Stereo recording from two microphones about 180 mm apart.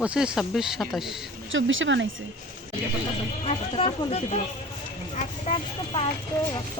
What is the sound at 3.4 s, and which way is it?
Speech, 30° left (ahead or behind).